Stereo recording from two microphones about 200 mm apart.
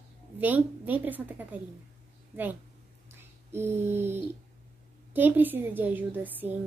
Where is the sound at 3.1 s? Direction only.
10° right (ahead or behind).